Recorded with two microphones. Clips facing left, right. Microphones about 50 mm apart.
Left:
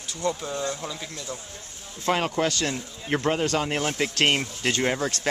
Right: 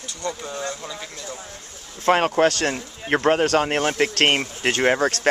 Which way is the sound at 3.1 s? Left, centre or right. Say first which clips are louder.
Right 5 dB; right.